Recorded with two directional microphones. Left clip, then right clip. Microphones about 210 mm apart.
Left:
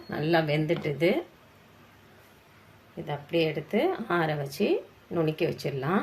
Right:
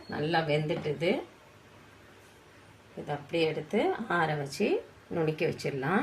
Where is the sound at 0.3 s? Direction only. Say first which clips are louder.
Left 4 dB; 30° left (ahead or behind).